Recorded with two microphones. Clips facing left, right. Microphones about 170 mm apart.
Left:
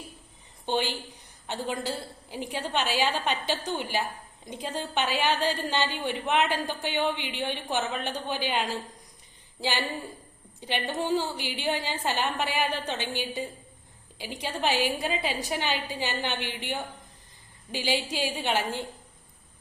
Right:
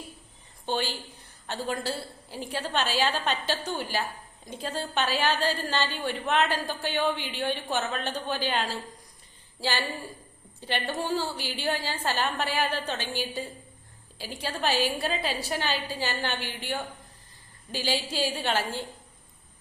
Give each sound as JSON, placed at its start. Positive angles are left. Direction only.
{"t": 0.6, "sound": "a woman's voice", "side_deg": 15}